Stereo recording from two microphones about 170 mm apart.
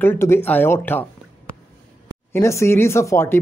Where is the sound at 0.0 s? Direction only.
15° left (ahead or behind).